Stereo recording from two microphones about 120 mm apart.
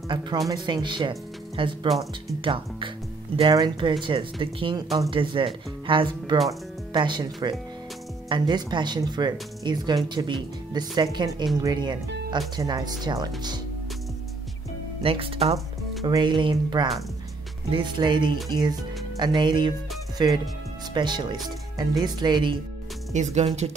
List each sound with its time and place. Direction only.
0.1 s speech: 40° right (ahead or behind)
8.3 s speech: 40° right (ahead or behind)
15.0 s speech: 50° right (ahead or behind)
16.1 s speech: 40° right (ahead or behind)
23.1 s speech: 75° right (ahead or behind)